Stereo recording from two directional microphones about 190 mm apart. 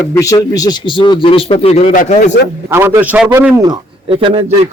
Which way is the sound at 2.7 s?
10° right (ahead or behind).